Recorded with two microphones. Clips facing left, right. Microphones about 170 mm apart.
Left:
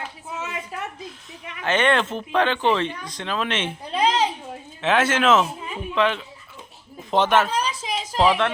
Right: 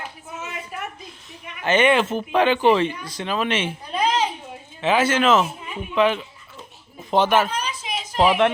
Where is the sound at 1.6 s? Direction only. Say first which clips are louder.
Right 3 dB; 5° right (ahead or behind).